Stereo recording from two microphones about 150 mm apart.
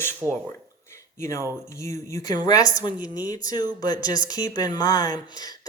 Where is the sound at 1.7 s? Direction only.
20° left (ahead or behind).